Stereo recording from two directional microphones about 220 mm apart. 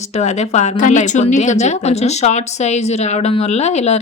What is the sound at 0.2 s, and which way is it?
A woman's voice, 30° left (ahead or behind).